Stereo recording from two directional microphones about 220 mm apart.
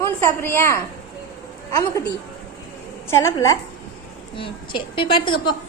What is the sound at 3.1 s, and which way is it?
A woman's voice, 10° left (ahead or behind).